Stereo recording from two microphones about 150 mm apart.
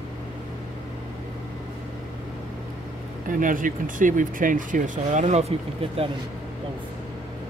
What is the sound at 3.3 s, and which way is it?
Speech, 65° right (ahead or behind).